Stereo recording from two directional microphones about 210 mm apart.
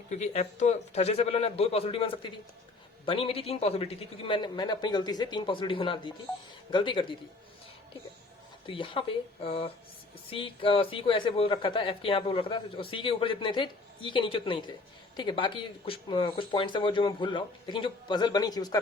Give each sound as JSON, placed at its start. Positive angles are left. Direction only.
{"t": 0.1, "sound": "speech", "side_deg": 35}
{"t": 8.6, "sound": "speech", "side_deg": 25}